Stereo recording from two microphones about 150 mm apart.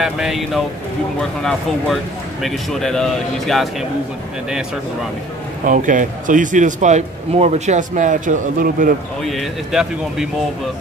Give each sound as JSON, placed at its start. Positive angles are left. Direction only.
{"t": 0.0, "sound": "speech", "side_deg": -5}
{"t": 5.7, "sound": "speech", "side_deg": -60}
{"t": 9.2, "sound": "speech", "side_deg": 0}